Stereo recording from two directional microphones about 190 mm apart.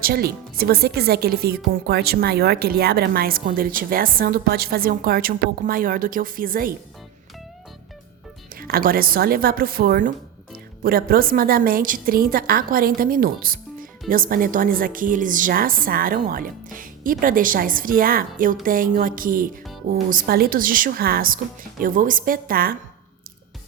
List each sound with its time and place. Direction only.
0.0 s a woman's voice: 55° right (ahead or behind)
8.5 s a woman's voice: 50° right (ahead or behind)